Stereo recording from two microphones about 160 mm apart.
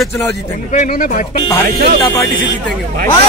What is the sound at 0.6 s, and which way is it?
Speech, 55° left (ahead or behind).